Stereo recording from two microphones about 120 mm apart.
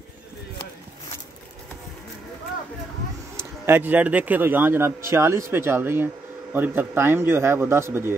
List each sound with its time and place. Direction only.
3.3 s a man's voice: 20° right (ahead or behind)